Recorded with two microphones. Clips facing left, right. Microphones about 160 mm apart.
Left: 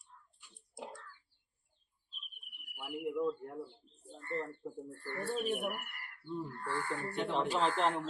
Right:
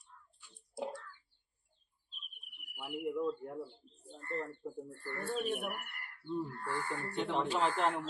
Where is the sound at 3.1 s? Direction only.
15° left (ahead or behind).